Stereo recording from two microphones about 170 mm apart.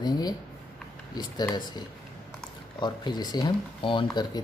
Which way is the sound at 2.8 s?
25° left (ahead or behind).